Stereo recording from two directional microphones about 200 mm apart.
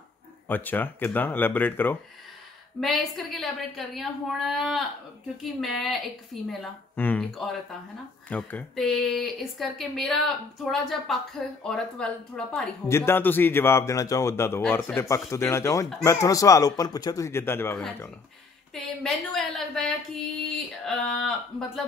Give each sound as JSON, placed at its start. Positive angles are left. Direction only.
{"t": 0.5, "sound": "a man's voice", "side_deg": 10}